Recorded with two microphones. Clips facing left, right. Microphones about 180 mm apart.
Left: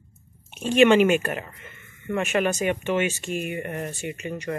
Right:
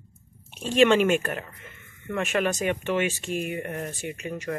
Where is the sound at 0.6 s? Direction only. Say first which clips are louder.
Left 3 dB; 5° left (ahead or behind).